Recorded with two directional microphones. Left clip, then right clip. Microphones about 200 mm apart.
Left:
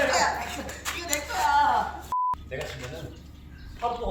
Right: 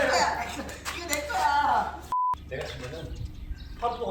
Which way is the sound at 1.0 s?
5° right (ahead or behind).